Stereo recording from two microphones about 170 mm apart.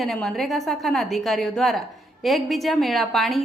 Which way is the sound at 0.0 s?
Centre (ahead or behind).